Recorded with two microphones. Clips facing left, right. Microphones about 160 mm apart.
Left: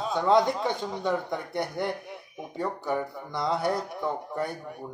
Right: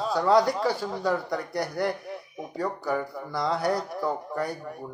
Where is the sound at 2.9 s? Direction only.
Centre (ahead or behind).